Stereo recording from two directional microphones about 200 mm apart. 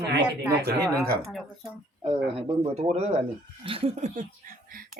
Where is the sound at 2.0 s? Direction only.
25° right (ahead or behind).